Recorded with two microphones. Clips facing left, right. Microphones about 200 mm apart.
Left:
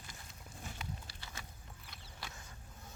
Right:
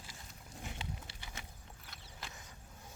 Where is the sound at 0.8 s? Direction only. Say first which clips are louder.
Right 1 dB; 25° right (ahead or behind).